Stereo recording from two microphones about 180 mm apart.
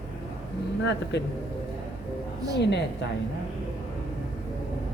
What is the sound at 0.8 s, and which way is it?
Speech, 75° left (ahead or behind).